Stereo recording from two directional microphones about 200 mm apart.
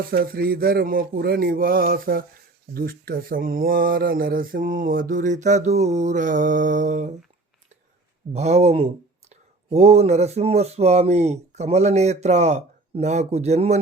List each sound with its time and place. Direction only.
0.1 s speech: 50° right (ahead or behind)
8.3 s speech: 35° right (ahead or behind)